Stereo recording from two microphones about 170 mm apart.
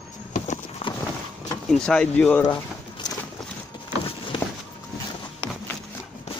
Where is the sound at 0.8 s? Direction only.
35° left (ahead or behind).